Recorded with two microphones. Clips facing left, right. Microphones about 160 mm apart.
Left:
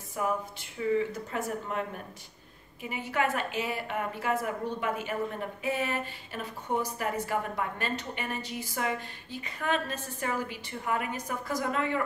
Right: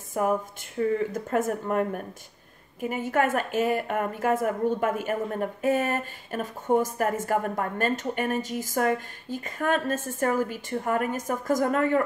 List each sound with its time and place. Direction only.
0.2 s a woman's voice: 50° right (ahead or behind)